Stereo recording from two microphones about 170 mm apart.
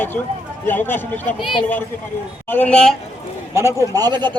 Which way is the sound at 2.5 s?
10° left (ahead or behind).